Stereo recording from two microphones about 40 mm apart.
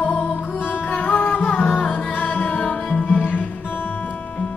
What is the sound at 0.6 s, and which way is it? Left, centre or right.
Music, left.